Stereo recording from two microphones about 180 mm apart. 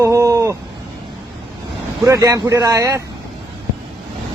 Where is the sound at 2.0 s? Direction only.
20° right (ahead or behind).